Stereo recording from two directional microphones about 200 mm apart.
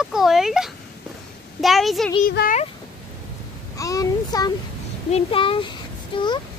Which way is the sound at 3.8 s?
15° left (ahead or behind).